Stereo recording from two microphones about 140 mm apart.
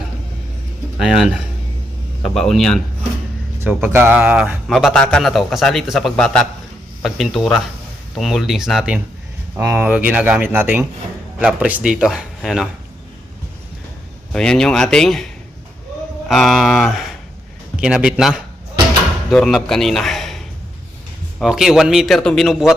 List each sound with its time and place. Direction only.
0.9 s a man's voice: 5° right (ahead or behind)
3.6 s a man's voice: 10° right (ahead or behind)
9.6 s a man's voice: 15° right (ahead or behind)
14.3 s a man's voice: 5° left (ahead or behind)
16.3 s a man's voice: centre (ahead or behind)